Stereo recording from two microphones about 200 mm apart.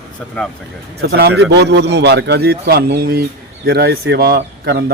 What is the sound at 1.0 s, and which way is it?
Speech, 55° right (ahead or behind).